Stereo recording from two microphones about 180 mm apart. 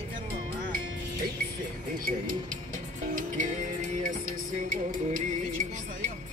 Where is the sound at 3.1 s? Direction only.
45° right (ahead or behind).